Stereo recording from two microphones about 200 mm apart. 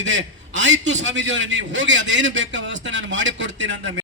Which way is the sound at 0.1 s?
65° right (ahead or behind).